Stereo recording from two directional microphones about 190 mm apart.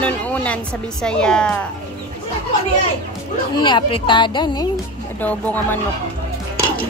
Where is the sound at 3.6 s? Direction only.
25° left (ahead or behind).